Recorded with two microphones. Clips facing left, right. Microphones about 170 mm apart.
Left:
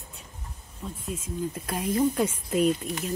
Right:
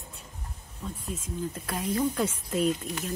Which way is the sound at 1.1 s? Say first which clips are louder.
Left 4 dB; 10° left (ahead or behind).